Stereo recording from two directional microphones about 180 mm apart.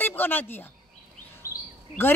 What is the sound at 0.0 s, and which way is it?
Speech, 10° left (ahead or behind).